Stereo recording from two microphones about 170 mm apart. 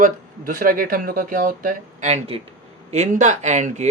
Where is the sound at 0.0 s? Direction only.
55° right (ahead or behind).